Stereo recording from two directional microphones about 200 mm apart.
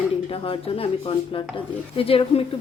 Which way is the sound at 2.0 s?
30° left (ahead or behind).